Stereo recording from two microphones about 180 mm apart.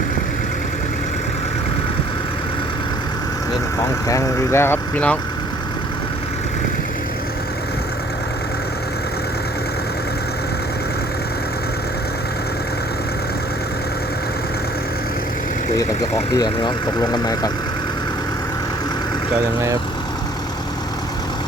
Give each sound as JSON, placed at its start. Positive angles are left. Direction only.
{"t": 4.1, "sound": "speech", "side_deg": 15}
{"t": 16.3, "sound": "speech", "side_deg": 20}